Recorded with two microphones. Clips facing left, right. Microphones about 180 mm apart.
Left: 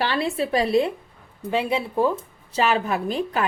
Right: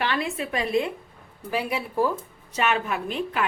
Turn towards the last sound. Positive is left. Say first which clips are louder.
# left 3 dB
turn(degrees=40)  # may be behind; listen again after turning